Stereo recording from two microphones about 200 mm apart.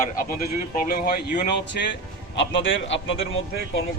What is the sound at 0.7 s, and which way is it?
Speech, 45° left (ahead or behind).